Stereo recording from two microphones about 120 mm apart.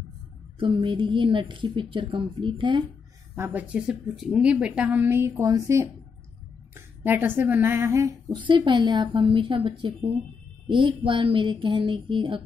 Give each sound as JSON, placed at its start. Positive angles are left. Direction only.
{"t": 0.6, "sound": "a woman's voice", "side_deg": -45}
{"t": 3.3, "sound": "a woman's voice", "side_deg": -15}
{"t": 8.3, "sound": "a woman's voice", "side_deg": -40}